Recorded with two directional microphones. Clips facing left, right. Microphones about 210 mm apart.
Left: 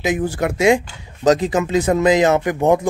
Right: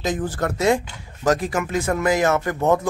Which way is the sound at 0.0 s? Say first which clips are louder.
Left 4 dB; 10° left (ahead or behind).